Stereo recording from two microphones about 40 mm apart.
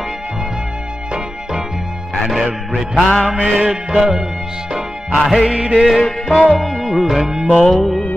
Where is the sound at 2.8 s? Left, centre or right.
Centre.